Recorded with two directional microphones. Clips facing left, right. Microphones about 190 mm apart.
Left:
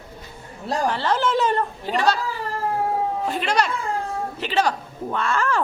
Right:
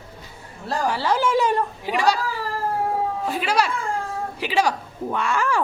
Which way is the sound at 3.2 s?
5° right (ahead or behind).